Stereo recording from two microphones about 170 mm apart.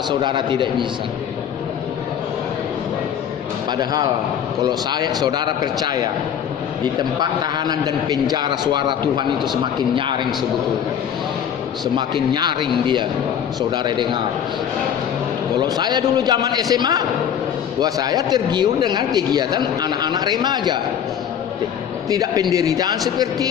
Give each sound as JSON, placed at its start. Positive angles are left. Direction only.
{"t": 0.1, "sound": "speech", "side_deg": -25}
{"t": 3.7, "sound": "speech", "side_deg": -25}
{"t": 7.2, "sound": "speech", "side_deg": -25}
{"t": 11.9, "sound": "speech", "side_deg": -25}
{"t": 15.5, "sound": "speech", "side_deg": -25}
{"t": 22.1, "sound": "speech", "side_deg": -20}